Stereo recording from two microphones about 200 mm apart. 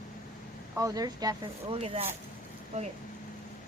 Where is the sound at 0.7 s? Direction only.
15° right (ahead or behind).